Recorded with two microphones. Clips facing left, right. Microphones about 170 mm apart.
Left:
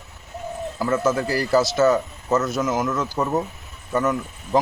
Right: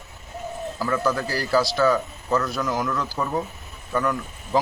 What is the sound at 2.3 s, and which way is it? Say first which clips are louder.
Speech: left 2 dB; 20° left (ahead or behind).